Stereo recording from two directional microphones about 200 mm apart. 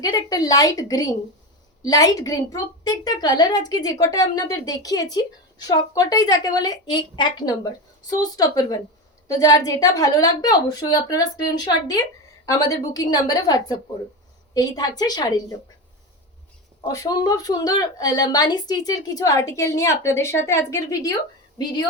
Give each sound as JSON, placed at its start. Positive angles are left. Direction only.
{"t": 0.0, "sound": "a woman's voice", "side_deg": 20}
{"t": 16.8, "sound": "a woman's voice", "side_deg": 20}